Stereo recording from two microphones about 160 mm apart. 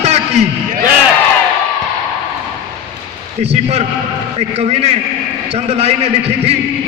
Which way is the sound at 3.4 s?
40° right (ahead or behind).